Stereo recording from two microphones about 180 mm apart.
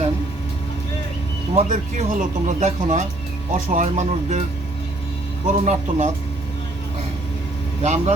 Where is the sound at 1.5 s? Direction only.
40° right (ahead or behind).